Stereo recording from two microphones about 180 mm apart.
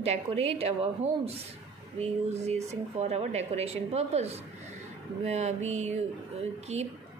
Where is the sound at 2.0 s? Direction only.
35° right (ahead or behind).